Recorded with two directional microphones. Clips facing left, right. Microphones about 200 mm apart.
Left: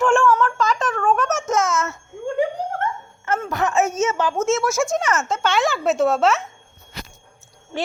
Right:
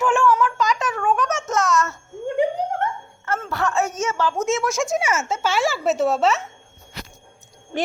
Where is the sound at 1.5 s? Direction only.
20° left (ahead or behind).